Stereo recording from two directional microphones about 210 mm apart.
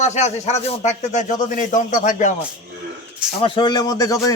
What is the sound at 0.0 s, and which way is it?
Speech, 35° left (ahead or behind).